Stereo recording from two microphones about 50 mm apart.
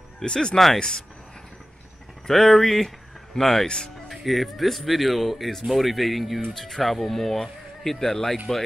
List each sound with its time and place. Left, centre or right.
0.2 s speech: centre
2.2 s speech: centre
4.1 s speech: centre